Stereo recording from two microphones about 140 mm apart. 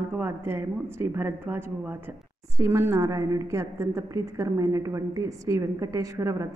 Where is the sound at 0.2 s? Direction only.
15° right (ahead or behind).